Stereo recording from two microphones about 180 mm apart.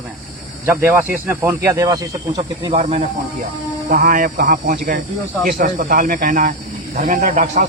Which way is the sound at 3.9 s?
50° right (ahead or behind).